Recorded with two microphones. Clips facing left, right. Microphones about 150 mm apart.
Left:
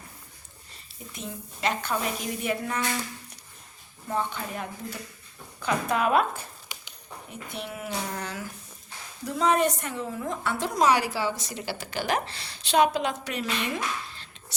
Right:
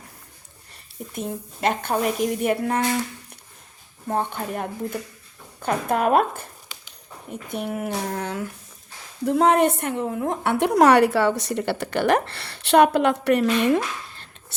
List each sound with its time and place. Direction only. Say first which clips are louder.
1.1 s a woman's voice: right 8 dB; 55° right (ahead or behind)
4.0 s a woman's voice: right 4 dB; 55° right (ahead or behind)